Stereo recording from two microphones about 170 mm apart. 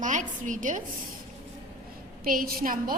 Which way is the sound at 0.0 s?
45° right (ahead or behind).